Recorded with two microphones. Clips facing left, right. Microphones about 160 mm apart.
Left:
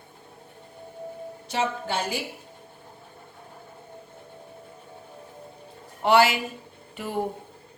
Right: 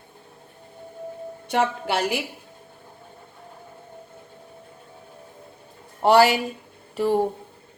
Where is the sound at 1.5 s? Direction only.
70° right (ahead or behind).